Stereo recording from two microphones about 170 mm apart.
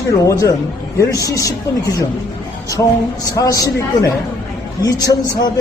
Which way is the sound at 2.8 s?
15° left (ahead or behind).